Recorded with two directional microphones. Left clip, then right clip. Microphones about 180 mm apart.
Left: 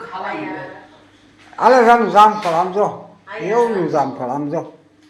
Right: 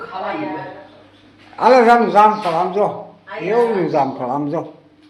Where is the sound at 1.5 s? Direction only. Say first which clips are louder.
Even; 5° left (ahead or behind).